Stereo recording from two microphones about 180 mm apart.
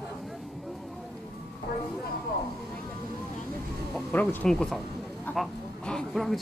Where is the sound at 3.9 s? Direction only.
5° left (ahead or behind).